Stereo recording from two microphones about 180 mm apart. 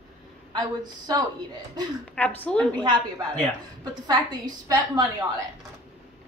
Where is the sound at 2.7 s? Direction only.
25° right (ahead or behind).